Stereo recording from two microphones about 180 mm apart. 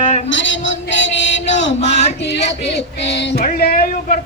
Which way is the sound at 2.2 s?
70° left (ahead or behind).